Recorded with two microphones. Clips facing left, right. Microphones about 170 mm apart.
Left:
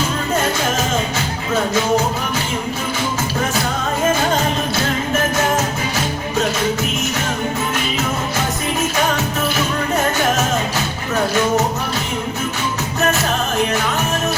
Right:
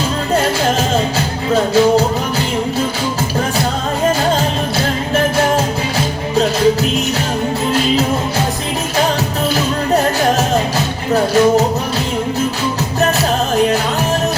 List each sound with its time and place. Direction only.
1.5 s music: 35° right (ahead or behind)
11.1 s music: 35° right (ahead or behind)